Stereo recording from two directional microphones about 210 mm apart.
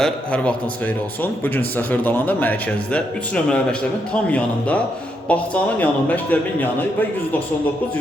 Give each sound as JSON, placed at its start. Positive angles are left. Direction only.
{"t": 0.0, "sound": "a man's voice", "side_deg": 5}